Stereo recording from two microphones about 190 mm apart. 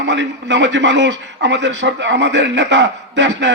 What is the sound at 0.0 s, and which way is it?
A man's voice, 70° right (ahead or behind).